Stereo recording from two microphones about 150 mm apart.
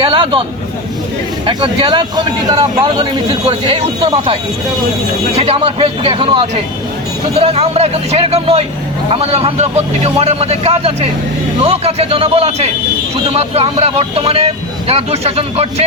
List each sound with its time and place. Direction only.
0.0 s a sound: 35° right (ahead or behind)
1.5 s a man's voice: 35° right (ahead or behind)
5.4 s a man's voice: 35° right (ahead or behind)